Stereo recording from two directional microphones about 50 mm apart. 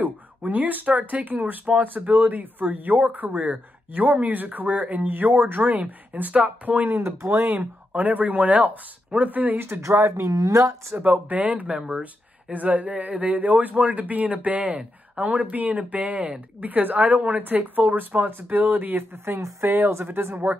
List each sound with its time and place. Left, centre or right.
0.0 s speech: right
9.8 s speech: right
11.0 s speech: right
19.3 s a woman's voice: right